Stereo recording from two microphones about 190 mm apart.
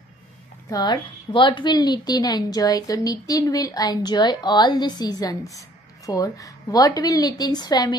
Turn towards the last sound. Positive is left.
turn(degrees=20)  # may be behind; listen again after turning